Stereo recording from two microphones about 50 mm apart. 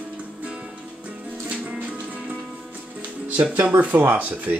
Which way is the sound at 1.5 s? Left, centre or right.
Right.